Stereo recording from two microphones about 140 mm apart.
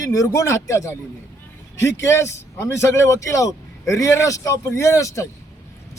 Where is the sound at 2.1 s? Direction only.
20° left (ahead or behind).